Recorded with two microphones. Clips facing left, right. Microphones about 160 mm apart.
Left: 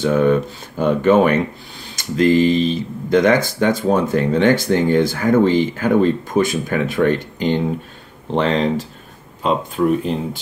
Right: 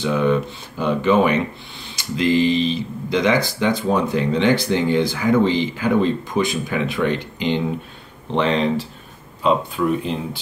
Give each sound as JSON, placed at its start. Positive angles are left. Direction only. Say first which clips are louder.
{"t": 0.0, "sound": "speech", "louder": "left 3 dB", "side_deg": 50}